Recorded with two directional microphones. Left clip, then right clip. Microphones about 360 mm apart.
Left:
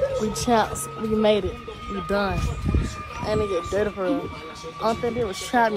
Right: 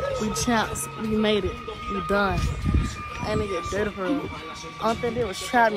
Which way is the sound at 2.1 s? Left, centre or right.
Centre.